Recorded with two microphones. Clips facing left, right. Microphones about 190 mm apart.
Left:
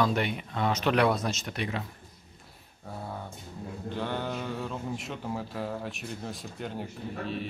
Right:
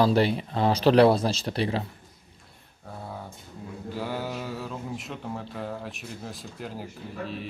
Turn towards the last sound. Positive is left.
turn(degrees=0)  # may be behind; listen again after turning